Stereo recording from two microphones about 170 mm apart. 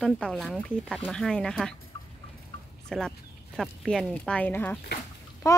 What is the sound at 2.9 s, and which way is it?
Speech, centre (ahead or behind).